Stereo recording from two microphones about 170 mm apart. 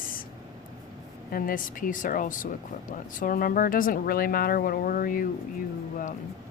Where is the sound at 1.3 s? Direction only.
55° left (ahead or behind).